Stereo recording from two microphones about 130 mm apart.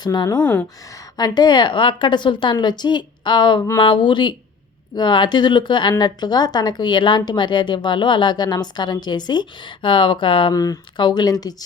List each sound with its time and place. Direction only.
0.0 s a woman's voice: 30° left (ahead or behind)
0.3 s speech: 10° left (ahead or behind)
1.1 s a woman's voice: 30° left (ahead or behind)
10.5 s speech: 30° left (ahead or behind)